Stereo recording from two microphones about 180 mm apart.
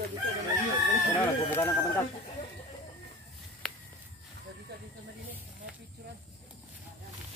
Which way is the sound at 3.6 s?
5° left (ahead or behind).